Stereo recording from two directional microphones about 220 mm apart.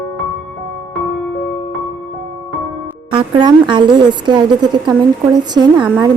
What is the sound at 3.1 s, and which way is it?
Speech, 20° right (ahead or behind).